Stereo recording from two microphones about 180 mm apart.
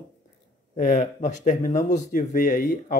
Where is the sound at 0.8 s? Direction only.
45° left (ahead or behind).